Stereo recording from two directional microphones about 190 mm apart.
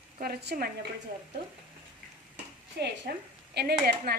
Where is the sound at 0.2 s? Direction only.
55° right (ahead or behind).